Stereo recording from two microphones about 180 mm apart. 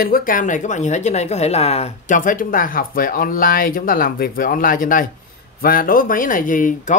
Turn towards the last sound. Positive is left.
turn(degrees=45)  # may be behind; listen again after turning